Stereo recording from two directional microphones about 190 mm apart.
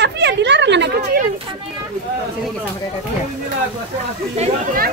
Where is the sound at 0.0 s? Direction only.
65° right (ahead or behind).